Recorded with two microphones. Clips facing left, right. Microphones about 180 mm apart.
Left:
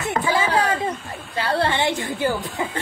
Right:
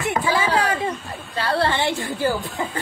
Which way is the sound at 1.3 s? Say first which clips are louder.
Even; 15° left (ahead or behind).